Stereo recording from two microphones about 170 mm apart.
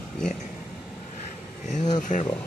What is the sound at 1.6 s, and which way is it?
Speech, 45° left (ahead or behind).